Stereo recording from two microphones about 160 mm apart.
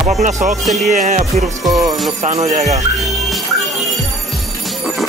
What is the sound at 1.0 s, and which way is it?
Speech, 45° right (ahead or behind).